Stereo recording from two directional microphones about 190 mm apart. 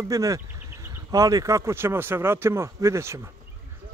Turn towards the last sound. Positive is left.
turn(degrees=-15)  # may be behind; listen again after turning